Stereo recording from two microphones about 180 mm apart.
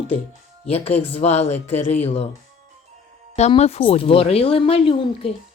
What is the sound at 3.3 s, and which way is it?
Speech, 35° left (ahead or behind).